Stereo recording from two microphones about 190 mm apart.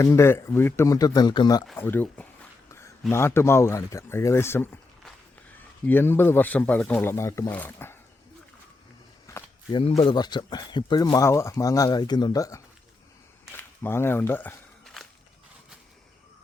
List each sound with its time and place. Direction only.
0.0 s speech: 15° left (ahead or behind)
1.6 s speech: 10° left (ahead or behind)
2.6 s a sound: 15° left (ahead or behind)
3.1 s speech: 15° left (ahead or behind)
5.8 s speech: 10° left (ahead or behind)
9.2 s a sound: 15° left (ahead or behind)
9.8 s speech: 30° left (ahead or behind)
13.5 s walk: 10° left (ahead or behind)